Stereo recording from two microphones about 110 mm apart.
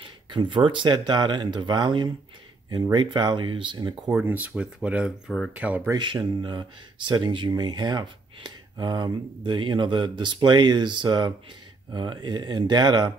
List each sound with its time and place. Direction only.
0.3 s speech: 45° right (ahead or behind)
4.1 s speech: 20° right (ahead or behind)
5.9 s speech: 45° right (ahead or behind)